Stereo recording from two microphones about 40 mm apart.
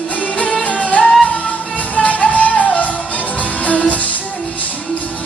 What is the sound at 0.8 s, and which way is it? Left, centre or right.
Music, left.